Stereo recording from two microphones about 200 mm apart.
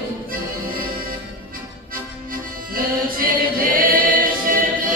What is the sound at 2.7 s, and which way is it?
Music, 45° right (ahead or behind).